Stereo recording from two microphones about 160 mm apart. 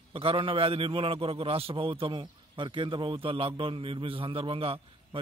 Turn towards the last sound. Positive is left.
turn(degrees=-35)  # may be behind; listen again after turning